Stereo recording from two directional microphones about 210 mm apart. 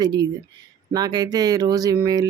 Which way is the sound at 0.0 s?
20° right (ahead or behind).